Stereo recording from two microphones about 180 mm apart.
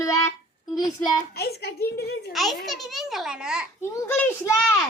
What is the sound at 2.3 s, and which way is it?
A child's voice, centre (ahead or behind).